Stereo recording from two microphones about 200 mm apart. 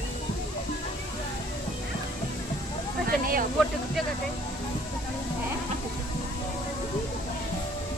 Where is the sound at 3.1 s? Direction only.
45° right (ahead or behind).